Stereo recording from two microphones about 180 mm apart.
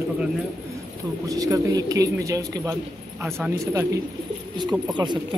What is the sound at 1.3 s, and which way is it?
Speech, 20° right (ahead or behind).